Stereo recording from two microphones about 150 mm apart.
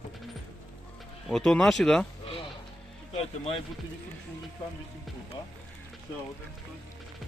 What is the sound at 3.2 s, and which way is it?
Speech, 40° left (ahead or behind).